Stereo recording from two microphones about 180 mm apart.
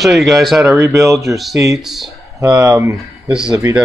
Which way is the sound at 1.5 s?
20° right (ahead or behind).